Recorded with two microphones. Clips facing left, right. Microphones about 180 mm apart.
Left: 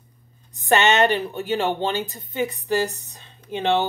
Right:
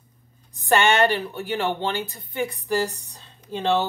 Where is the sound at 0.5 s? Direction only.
20° left (ahead or behind).